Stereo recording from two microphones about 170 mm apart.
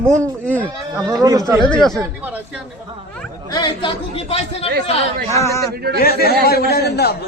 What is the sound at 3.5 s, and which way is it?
Speech, 25° left (ahead or behind).